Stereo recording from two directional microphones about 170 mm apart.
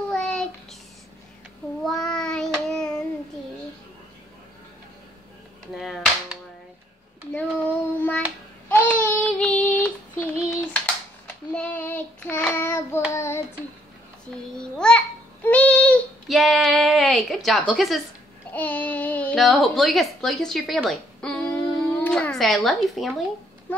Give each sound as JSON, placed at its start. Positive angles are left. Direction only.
{"t": 0.1, "sound": "child singing", "side_deg": 5}
{"t": 1.9, "sound": "child singing", "side_deg": 5}
{"t": 5.8, "sound": "a sound", "side_deg": -5}
{"t": 7.3, "sound": "child singing", "side_deg": 10}
{"t": 11.5, "sound": "child singing", "side_deg": 10}
{"t": 14.6, "sound": "child singing", "side_deg": 5}
{"t": 18.5, "sound": "babbling", "side_deg": 10}